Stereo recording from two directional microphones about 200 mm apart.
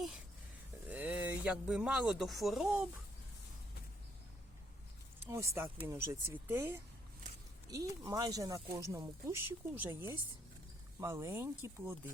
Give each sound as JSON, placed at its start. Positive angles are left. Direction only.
{"t": 0.9, "sound": "speech", "side_deg": -5}
{"t": 5.2, "sound": "speech", "side_deg": -10}
{"t": 11.0, "sound": "speech", "side_deg": -10}